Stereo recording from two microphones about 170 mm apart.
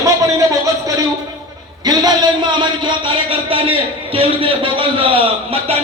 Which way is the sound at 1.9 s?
25° right (ahead or behind).